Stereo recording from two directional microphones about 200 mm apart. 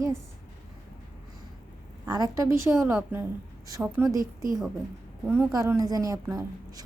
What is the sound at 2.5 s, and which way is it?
A woman's voice, 15° right (ahead or behind).